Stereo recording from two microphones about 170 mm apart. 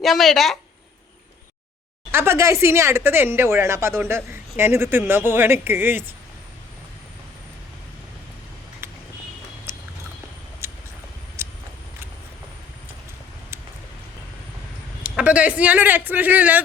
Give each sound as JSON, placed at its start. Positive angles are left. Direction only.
{"t": 0.0, "sound": "a woman's voice", "side_deg": 0}
{"t": 2.1, "sound": "speech", "side_deg": -15}
{"t": 9.7, "sound": "a sound", "side_deg": -15}
{"t": 10.6, "sound": "vehicle", "side_deg": -15}
{"t": 11.4, "sound": "a sound", "side_deg": -15}
{"t": 15.0, "sound": "speech", "side_deg": -10}